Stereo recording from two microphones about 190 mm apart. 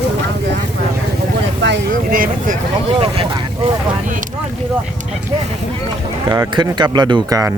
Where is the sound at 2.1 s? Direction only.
50° right (ahead or behind).